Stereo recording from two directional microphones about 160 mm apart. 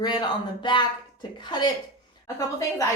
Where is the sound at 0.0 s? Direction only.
25° left (ahead or behind).